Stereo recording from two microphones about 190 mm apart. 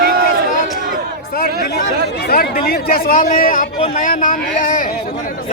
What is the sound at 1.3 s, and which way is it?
Speech, 50° left (ahead or behind).